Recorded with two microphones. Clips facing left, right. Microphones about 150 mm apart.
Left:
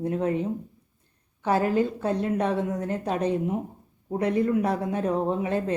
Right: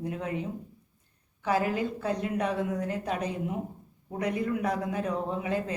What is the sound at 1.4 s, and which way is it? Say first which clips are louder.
Speech: left 5 dB; 30° left (ahead or behind).